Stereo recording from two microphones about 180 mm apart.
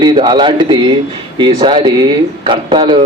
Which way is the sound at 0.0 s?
25° right (ahead or behind).